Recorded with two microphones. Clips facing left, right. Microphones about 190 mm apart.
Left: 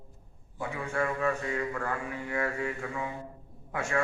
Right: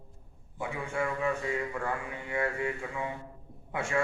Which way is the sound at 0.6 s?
15° right (ahead or behind).